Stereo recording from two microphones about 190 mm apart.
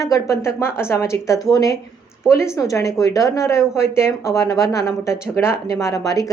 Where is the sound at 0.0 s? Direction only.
15° left (ahead or behind).